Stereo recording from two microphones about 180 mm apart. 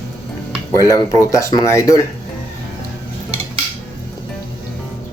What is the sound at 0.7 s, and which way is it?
Speech, 20° left (ahead or behind).